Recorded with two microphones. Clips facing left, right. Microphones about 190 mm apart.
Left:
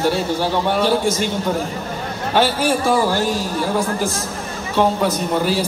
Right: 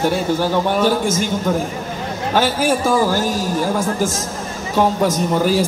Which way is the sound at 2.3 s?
45° right (ahead or behind).